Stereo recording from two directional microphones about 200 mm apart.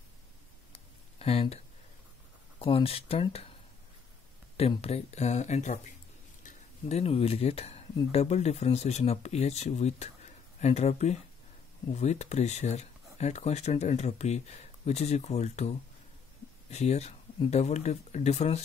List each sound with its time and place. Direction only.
0.7 s a sound: 30° left (ahead or behind)
2.6 s speech: 30° left (ahead or behind)
4.6 s speech: 30° left (ahead or behind)